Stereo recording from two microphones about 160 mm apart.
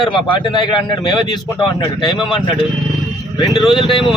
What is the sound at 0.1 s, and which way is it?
Speech, 30° left (ahead or behind).